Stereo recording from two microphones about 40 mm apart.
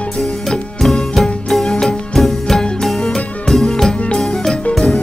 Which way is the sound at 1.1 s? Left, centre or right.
Centre.